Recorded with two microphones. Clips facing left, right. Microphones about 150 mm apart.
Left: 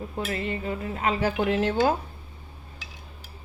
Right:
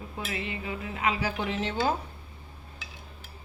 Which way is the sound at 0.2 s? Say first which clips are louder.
Left 5 dB; 40° left (ahead or behind).